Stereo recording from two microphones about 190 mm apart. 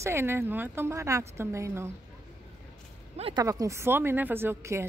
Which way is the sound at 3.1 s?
30° right (ahead or behind).